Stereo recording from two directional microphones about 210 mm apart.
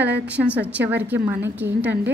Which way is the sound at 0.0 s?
5° right (ahead or behind).